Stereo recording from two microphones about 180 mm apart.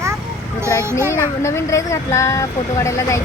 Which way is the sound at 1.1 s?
15° left (ahead or behind).